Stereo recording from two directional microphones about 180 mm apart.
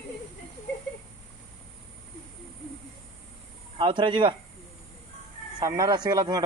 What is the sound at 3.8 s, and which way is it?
Speech, 25° right (ahead or behind).